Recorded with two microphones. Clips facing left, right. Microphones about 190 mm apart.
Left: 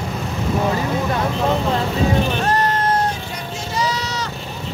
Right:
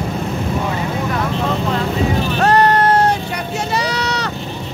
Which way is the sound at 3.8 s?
70° right (ahead or behind).